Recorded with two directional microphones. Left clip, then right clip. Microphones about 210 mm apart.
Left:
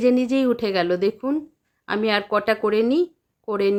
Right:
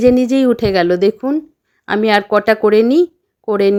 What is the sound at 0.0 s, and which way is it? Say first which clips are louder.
Speech: right 8 dB; 35° right (ahead or behind).